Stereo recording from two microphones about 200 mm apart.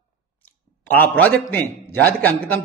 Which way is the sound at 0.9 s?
10° left (ahead or behind).